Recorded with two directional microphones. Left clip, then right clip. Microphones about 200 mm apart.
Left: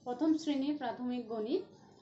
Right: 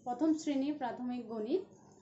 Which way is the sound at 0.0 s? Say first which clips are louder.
Even; 15° right (ahead or behind).